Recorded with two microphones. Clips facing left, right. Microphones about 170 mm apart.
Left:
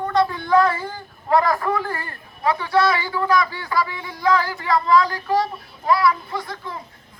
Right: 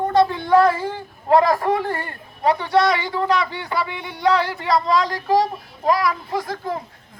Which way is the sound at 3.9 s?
70° right (ahead or behind).